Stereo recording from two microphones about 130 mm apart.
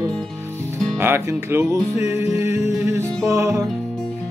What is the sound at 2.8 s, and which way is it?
Music, 20° right (ahead or behind).